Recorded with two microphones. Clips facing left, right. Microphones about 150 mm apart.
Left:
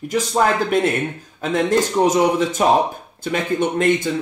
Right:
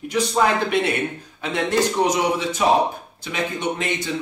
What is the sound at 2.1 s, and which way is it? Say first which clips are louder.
A man's voice: left 5 dB; 45° left (ahead or behind).